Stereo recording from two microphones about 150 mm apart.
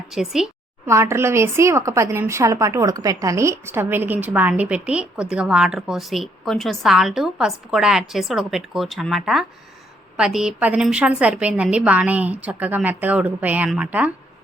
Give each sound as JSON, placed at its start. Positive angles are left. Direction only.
{"t": 0.1, "sound": "a woman's voice", "side_deg": -5}
{"t": 0.9, "sound": "speech", "side_deg": -20}